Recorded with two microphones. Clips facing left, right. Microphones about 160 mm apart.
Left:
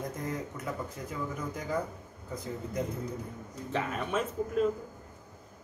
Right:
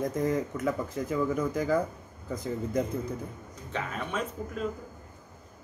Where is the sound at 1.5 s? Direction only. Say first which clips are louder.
Right 8 dB; 90° right.